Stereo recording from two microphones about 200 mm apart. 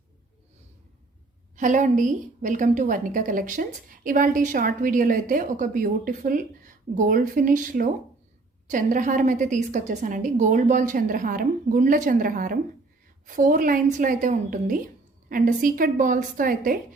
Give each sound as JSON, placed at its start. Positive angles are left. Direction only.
{"t": 1.5, "sound": "a woman's voice", "side_deg": -40}